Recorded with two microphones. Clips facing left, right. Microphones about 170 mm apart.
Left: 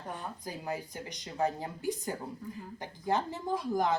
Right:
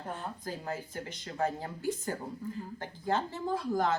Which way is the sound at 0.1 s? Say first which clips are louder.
Right 1 dB; 15° left (ahead or behind).